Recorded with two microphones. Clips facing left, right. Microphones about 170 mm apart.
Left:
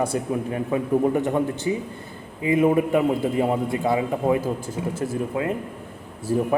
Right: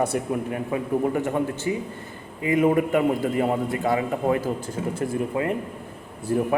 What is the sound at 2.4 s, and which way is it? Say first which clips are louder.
A man's voice: left 1 dB; 10° left (ahead or behind).